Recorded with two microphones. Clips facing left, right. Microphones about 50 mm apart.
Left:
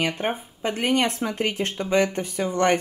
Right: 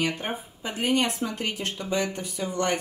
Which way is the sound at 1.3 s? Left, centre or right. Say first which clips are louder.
Left 5 dB; left.